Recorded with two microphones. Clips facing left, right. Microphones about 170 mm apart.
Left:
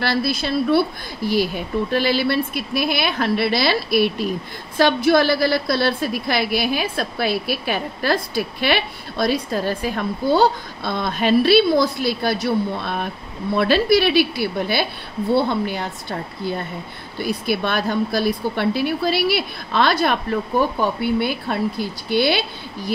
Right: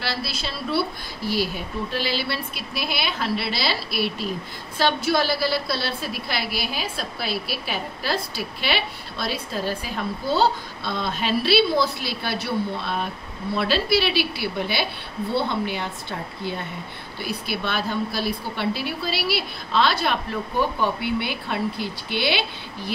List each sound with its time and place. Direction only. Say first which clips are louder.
0.0 s a woman's voice: left 8 dB; 50° left (ahead or behind)